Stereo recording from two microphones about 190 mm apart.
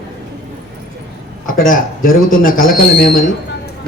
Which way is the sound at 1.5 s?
45° left (ahead or behind).